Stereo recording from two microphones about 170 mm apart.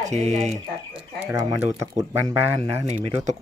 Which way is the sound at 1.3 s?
20° right (ahead or behind).